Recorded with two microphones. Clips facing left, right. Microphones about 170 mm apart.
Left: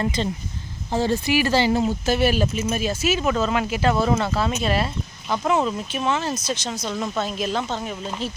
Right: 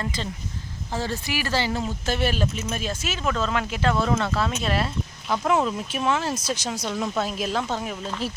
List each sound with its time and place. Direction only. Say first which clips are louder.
0.2 s speech: left 6 dB; 20° left (ahead or behind)
2.0 s speech: left 2 dB; 10° left (ahead or behind)